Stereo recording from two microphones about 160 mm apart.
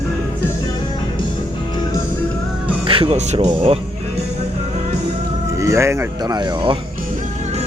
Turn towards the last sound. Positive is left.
turn(degrees=-30)  # may be behind; listen again after turning